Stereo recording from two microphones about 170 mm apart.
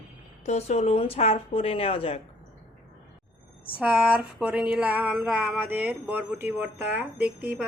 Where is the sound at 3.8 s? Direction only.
10° right (ahead or behind).